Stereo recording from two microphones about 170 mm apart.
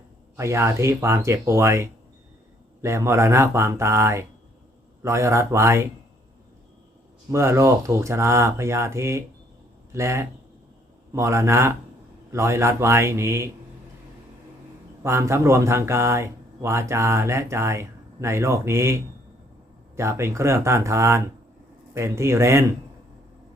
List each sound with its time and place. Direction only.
0.3 s speech: 15° right (ahead or behind)
7.3 s speech: 15° right (ahead or behind)
15.0 s speech: 15° right (ahead or behind)
20.0 s speech: 15° right (ahead or behind)